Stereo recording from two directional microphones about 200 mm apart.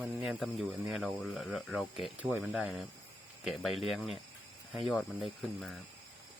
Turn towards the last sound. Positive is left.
turn(degrees=0)  # may be behind; listen again after turning